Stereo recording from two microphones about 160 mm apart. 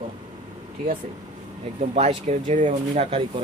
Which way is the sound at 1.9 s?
45° right (ahead or behind).